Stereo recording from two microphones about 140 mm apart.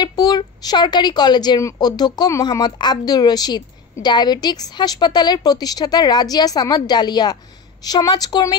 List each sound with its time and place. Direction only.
0.0 s a woman's voice: 30° left (ahead or behind)